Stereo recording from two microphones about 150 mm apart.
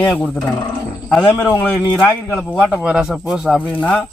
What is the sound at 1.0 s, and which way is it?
A man's voice, 5° left (ahead or behind).